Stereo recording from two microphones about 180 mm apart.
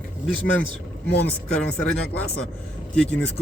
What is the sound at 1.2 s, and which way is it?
Speech, 10° left (ahead or behind).